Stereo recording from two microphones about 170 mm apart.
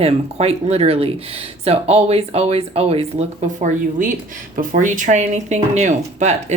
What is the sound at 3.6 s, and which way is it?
Speech, 50° right (ahead or behind).